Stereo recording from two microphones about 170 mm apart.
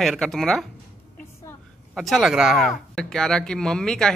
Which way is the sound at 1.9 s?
Centre (ahead or behind).